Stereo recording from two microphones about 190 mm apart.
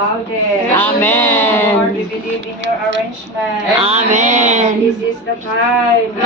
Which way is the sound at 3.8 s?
35° right (ahead or behind).